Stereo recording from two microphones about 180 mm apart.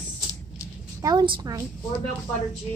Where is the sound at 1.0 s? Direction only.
20° right (ahead or behind).